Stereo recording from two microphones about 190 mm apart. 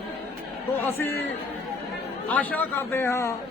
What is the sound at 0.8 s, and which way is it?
Speech, 15° left (ahead or behind).